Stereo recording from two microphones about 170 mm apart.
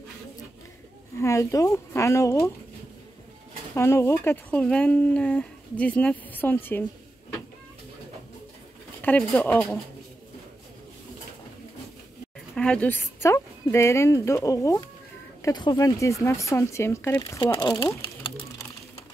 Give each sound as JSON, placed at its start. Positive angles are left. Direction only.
{"t": 1.1, "sound": "speech", "side_deg": 20}
{"t": 3.7, "sound": "speech", "side_deg": 15}
{"t": 9.0, "sound": "speech", "side_deg": 10}
{"t": 12.5, "sound": "speech", "side_deg": 5}
{"t": 17.8, "sound": "a sound", "side_deg": 25}